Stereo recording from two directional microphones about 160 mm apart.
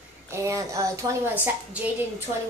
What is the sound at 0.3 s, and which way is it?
A woman's voice, 20° right (ahead or behind).